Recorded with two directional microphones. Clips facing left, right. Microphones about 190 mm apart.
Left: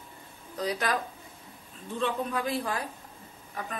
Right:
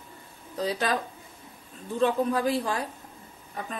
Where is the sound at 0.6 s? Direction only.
25° right (ahead or behind).